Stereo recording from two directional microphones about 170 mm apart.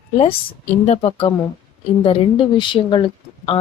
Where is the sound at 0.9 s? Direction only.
35° left (ahead or behind).